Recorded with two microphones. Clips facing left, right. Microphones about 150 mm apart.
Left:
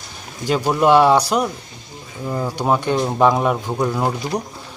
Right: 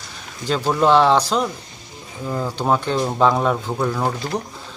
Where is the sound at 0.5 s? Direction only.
10° left (ahead or behind).